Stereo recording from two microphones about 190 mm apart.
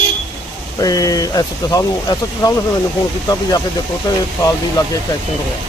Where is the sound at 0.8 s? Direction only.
20° left (ahead or behind).